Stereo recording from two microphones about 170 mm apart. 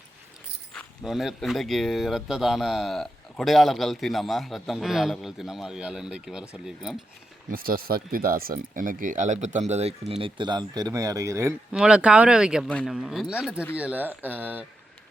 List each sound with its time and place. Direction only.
0.7 s speech: centre (ahead or behind)
7.5 s speech: 60° right (ahead or behind); by 11.5 s 20° right (ahead or behind)
11.7 s speech: 5° right (ahead or behind)